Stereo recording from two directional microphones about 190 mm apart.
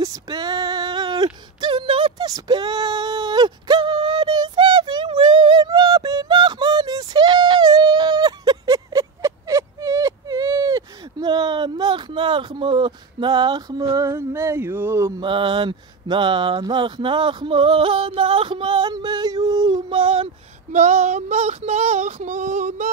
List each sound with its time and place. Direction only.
0.0 s a sound: 20° right (ahead or behind)
15.2 s mantra: 25° right (ahead or behind)
20.7 s female singing: 35° right (ahead or behind)